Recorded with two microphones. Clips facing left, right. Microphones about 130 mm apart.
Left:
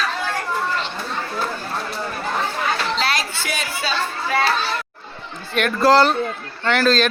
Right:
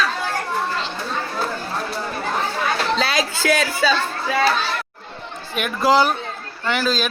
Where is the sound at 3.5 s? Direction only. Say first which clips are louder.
Right 9 dB; 90° right.